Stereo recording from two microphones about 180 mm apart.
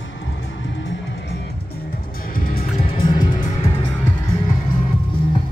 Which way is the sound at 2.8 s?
30° left (ahead or behind).